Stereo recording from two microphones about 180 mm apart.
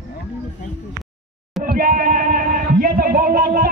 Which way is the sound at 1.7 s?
50° right (ahead or behind).